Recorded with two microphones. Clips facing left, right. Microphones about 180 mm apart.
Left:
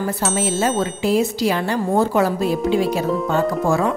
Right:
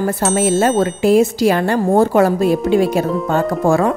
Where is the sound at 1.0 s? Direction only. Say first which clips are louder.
Right 6 dB; 50° right (ahead or behind).